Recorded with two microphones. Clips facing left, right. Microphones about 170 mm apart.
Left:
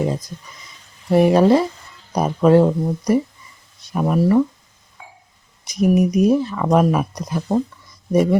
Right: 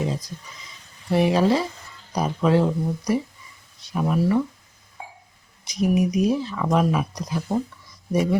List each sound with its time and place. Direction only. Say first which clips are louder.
0.0 s speech: left 5 dB; 50° left (ahead or behind)
5.0 s a sound: right 3 dB; 35° right (ahead or behind)
5.6 s speech: left 5 dB; 50° left (ahead or behind)